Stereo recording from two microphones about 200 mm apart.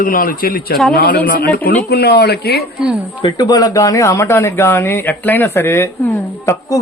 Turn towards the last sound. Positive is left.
turn(degrees=15)  # may be behind; listen again after turning